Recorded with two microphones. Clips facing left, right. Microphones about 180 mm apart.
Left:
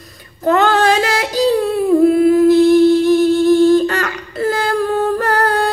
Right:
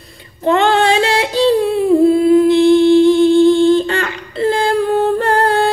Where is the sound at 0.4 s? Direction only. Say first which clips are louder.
Right 1 dB; 25° right (ahead or behind).